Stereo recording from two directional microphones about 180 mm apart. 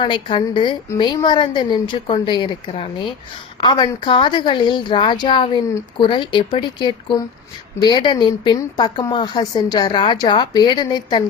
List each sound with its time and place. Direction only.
0.0 s speech: 25° left (ahead or behind)